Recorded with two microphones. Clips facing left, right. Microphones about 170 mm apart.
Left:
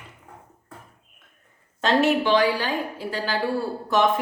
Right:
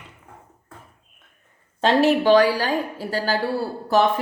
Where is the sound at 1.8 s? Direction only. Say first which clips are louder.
Right 3 dB; 35° right (ahead or behind).